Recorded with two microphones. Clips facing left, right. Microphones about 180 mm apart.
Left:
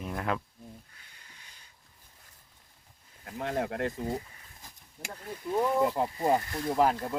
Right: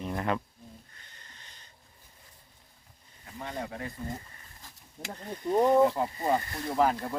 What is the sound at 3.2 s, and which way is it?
Speech, 80° left.